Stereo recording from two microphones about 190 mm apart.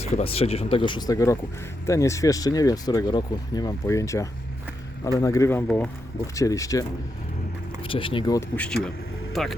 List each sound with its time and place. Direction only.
0.0 s speech: 35° left (ahead or behind); by 5.9 s 5° left (ahead or behind)
6.3 s speech: 15° left (ahead or behind)
7.8 s speech: 30° left (ahead or behind)
8.4 s speech: 5° left (ahead or behind)